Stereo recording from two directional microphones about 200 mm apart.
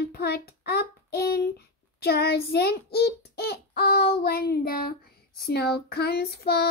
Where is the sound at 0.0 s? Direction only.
50° left (ahead or behind).